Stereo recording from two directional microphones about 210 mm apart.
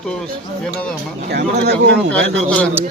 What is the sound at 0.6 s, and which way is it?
Speech, 5° left (ahead or behind).